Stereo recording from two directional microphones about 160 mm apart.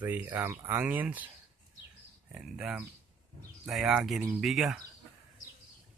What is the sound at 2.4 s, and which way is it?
Speech, 5° right (ahead or behind).